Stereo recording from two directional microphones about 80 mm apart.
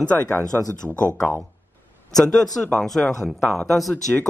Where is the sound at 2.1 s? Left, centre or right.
Centre.